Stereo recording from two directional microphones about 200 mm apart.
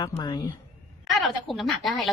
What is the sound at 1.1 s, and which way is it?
A woman's voice, centre (ahead or behind).